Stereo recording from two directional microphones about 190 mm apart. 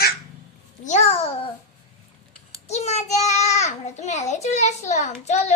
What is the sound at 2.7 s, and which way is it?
A child's voice, 35° left (ahead or behind).